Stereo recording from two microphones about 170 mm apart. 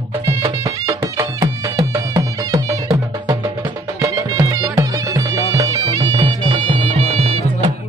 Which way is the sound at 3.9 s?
15° right (ahead or behind).